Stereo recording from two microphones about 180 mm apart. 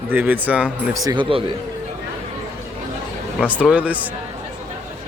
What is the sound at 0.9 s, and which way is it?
Speech, 25° right (ahead or behind).